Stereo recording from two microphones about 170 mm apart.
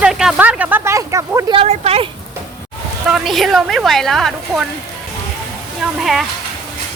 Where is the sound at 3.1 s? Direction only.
Centre (ahead or behind).